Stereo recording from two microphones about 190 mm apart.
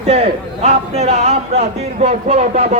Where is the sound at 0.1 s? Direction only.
35° right (ahead or behind).